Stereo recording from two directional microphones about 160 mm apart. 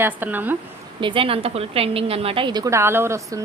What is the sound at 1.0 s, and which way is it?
A woman's voice, 30° right (ahead or behind).